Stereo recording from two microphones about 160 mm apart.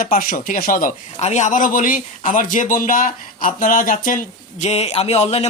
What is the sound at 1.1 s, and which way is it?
Speech, 45° left (ahead or behind).